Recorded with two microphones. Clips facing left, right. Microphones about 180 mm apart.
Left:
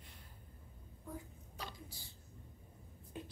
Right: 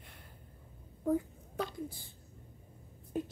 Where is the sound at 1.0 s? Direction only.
60° right (ahead or behind).